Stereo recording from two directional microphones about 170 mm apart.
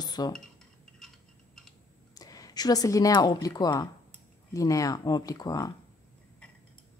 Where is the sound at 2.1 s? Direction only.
20° left (ahead or behind).